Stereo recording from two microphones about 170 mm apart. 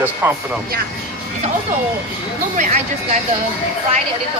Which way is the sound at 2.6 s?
45° right (ahead or behind).